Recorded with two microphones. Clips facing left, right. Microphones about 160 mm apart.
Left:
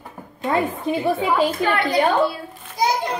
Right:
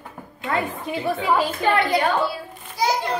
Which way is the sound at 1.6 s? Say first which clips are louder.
Right 1 dB; 25° right (ahead or behind).